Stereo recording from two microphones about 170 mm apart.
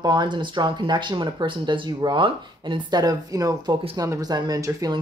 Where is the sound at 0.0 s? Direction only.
25° right (ahead or behind).